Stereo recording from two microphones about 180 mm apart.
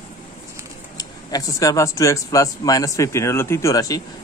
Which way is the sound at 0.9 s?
20° left (ahead or behind).